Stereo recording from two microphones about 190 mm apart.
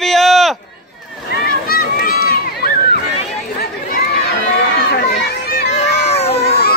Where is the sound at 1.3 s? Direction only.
50° left (ahead or behind).